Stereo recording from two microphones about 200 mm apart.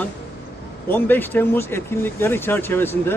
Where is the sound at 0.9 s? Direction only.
10° left (ahead or behind).